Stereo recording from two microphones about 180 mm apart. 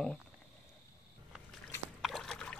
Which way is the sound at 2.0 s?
Centre (ahead or behind).